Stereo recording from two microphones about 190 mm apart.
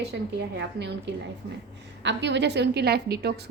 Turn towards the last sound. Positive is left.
turn(degrees=-60)  # may be behind; listen again after turning